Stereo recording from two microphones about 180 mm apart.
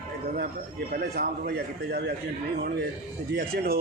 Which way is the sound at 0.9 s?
60° right (ahead or behind).